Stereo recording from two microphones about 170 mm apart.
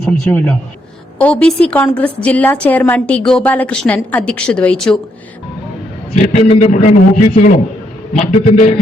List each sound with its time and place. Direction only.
0.0 s a woman's voice: 10° left (ahead or behind)
6.1 s a man's voice: 40° left (ahead or behind)